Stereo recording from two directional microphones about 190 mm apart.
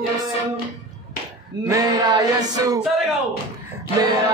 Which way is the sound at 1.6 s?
15° right (ahead or behind).